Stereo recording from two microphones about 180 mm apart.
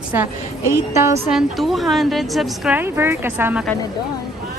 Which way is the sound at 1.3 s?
Centre (ahead or behind).